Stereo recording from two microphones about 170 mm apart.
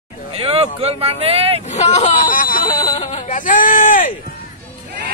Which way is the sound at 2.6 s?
20° left (ahead or behind).